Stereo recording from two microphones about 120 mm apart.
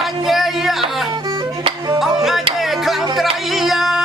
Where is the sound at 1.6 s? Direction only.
40° right (ahead or behind).